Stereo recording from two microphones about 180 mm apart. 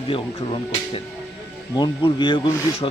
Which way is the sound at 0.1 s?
30° left (ahead or behind).